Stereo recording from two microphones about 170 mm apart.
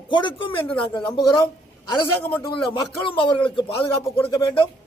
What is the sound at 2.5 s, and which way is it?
Speech, 30° left (ahead or behind).